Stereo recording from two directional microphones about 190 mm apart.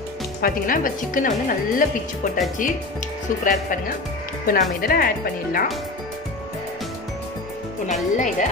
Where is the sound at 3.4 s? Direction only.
45° left (ahead or behind).